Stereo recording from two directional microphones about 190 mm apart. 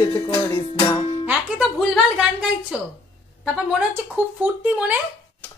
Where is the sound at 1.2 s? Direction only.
5° right (ahead or behind).